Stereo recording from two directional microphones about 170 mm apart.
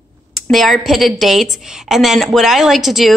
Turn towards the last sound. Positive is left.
turn(degrees=0)  # may be behind; listen again after turning